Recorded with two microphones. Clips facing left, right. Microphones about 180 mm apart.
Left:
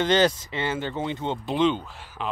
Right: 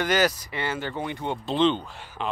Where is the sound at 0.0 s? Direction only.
25° left (ahead or behind).